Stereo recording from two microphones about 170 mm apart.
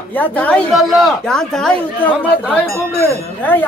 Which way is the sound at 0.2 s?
10° left (ahead or behind).